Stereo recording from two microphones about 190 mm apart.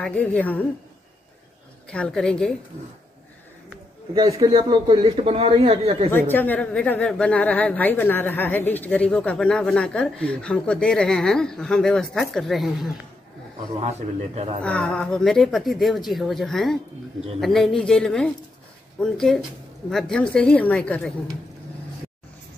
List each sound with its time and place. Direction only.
0.0 s a woman's voice: 10° left (ahead or behind)
1.9 s a woman's voice: 5° left (ahead or behind)
4.1 s a man's voice: 20° right (ahead or behind)
6.1 s a woman's voice: 10° left (ahead or behind)
13.7 s a man's voice: 35° right (ahead or behind)
14.6 s a woman's voice: 5° left (ahead or behind)